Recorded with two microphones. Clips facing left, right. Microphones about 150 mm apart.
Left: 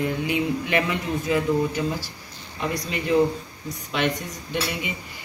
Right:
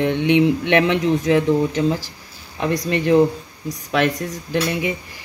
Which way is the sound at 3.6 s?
90° right.